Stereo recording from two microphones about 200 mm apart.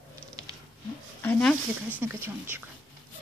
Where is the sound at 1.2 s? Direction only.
5° left (ahead or behind).